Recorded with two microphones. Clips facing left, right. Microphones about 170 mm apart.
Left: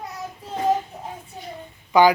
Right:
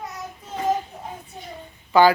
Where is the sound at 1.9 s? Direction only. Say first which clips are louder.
Even; 15° left (ahead or behind).